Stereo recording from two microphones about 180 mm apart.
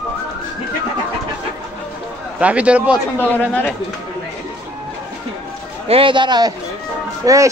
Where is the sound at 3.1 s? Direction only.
10° left (ahead or behind).